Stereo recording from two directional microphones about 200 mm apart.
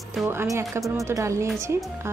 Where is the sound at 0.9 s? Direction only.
15° right (ahead or behind).